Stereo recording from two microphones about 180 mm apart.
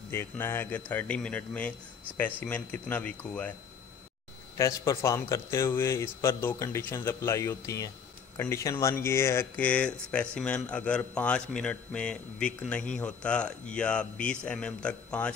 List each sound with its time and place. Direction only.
0.1 s speech: 15° left (ahead or behind)
4.6 s speech: 15° left (ahead or behind)